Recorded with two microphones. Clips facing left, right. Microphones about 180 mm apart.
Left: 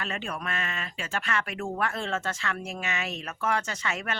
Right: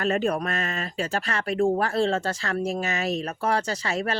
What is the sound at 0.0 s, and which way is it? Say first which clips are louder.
Speech: right 10 dB; 40° right (ahead or behind).